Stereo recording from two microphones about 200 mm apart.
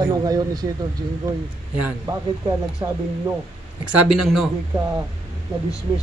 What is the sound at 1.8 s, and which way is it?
Speech, 10° right (ahead or behind).